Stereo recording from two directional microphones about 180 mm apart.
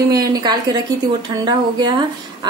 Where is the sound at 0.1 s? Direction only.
20° right (ahead or behind).